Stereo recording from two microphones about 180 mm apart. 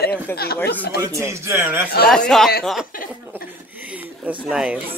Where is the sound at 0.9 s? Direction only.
15° right (ahead or behind).